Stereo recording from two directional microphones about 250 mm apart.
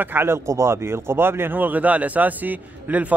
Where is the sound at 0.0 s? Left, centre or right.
Centre.